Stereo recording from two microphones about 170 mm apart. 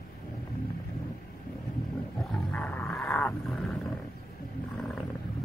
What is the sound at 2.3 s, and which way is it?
Roaring cats, 10° left (ahead or behind).